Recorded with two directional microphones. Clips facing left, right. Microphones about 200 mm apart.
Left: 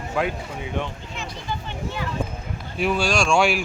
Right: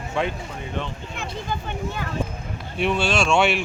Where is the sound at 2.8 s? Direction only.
Centre (ahead or behind).